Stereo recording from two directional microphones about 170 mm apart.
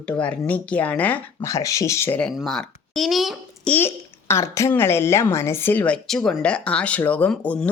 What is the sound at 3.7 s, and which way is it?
A child's voice, 15° left (ahead or behind).